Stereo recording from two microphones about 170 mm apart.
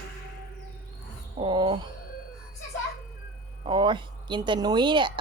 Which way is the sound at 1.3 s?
30° right (ahead or behind).